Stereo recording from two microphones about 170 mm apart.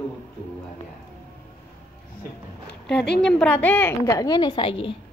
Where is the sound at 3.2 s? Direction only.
5° left (ahead or behind); by 4.9 s 30° left (ahead or behind).